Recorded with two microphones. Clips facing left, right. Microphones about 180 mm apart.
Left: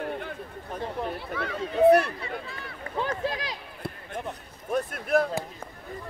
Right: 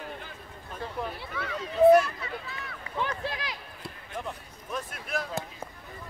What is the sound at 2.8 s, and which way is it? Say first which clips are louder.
Run: left 4 dB; 45° left (ahead or behind).